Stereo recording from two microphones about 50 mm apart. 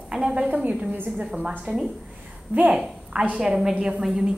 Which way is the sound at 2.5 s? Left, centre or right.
Right.